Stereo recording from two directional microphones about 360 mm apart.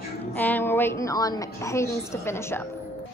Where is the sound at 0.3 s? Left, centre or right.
Centre.